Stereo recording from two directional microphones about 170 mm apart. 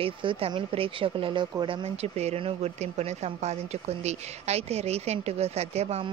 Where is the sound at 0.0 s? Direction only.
30° right (ahead or behind).